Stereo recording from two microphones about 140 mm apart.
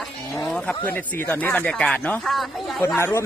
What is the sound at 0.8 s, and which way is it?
Speech, 15° left (ahead or behind).